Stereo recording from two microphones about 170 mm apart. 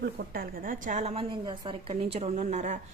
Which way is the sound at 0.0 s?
60° right (ahead or behind).